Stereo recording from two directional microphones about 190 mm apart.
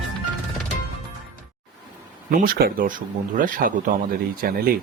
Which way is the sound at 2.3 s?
50° right (ahead or behind).